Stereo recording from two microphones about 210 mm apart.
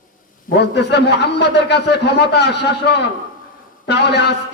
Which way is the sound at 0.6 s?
55° left (ahead or behind).